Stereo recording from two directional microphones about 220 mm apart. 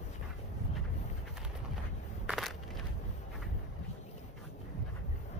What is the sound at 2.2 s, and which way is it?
Crushing, centre (ahead or behind).